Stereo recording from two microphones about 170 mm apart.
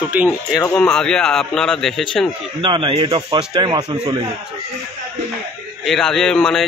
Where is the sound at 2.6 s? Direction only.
30° right (ahead or behind).